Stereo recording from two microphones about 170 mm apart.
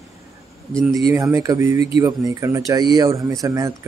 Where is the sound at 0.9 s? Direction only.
20° right (ahead or behind).